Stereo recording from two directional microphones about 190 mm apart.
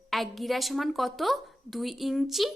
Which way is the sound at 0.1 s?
Centre (ahead or behind).